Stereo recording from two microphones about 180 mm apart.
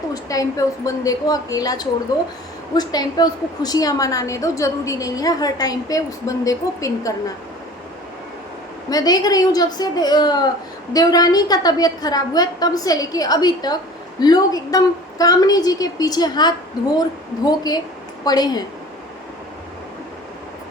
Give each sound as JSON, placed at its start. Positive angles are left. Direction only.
{"t": 0.1, "sound": "a woman's voice", "side_deg": 20}
{"t": 8.9, "sound": "a woman's voice", "side_deg": 20}